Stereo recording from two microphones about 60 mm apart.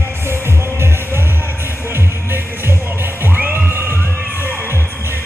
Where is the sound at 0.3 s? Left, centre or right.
Right.